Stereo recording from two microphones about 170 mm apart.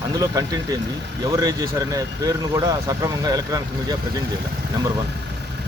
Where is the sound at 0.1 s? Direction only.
20° right (ahead or behind).